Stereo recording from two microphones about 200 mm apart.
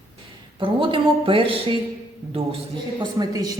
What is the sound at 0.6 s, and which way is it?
Speech, 25° right (ahead or behind).